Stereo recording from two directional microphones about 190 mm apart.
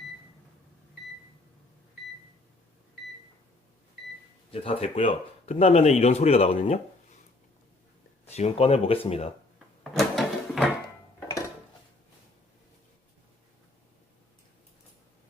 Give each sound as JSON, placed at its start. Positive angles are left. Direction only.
{"t": 4.5, "sound": "speech", "side_deg": 30}
{"t": 8.2, "sound": "speech", "side_deg": 35}
{"t": 10.0, "sound": "a sound", "side_deg": 0}